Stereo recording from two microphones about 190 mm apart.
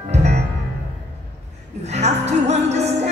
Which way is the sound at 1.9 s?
35° right (ahead or behind).